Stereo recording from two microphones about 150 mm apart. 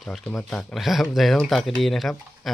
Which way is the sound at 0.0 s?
Centre (ahead or behind).